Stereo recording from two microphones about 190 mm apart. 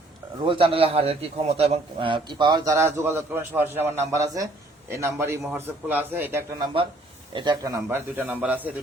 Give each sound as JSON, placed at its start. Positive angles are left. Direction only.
{"t": 0.4, "sound": "a man's voice", "side_deg": -30}
{"t": 7.3, "sound": "a man's voice", "side_deg": -20}